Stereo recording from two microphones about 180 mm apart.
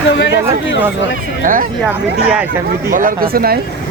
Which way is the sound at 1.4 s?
50° right (ahead or behind).